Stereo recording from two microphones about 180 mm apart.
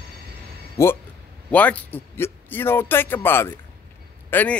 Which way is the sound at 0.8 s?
15° left (ahead or behind).